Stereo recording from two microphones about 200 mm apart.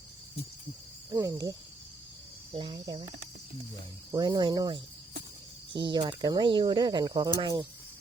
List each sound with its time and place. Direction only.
1.1 s speech: 15° right (ahead or behind)